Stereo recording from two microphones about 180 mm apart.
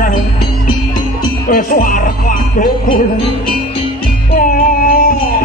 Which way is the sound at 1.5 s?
50° left (ahead or behind).